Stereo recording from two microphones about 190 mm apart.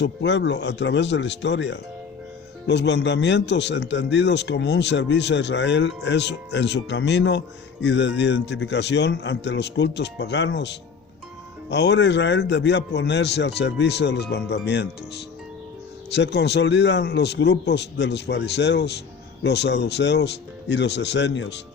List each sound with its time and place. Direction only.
0.0 s a man's voice: 70° left (ahead or behind)